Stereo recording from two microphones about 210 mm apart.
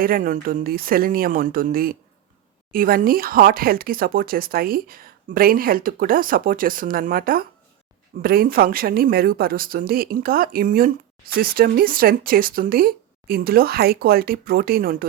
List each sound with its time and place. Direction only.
0.0 s speech: 40° right (ahead or behind)